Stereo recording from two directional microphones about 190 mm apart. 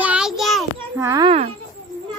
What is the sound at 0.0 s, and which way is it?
Child singing, 5° right (ahead or behind).